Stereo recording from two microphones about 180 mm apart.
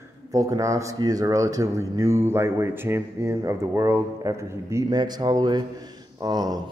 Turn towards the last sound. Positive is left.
turn(degrees=-20)  # may be behind; listen again after turning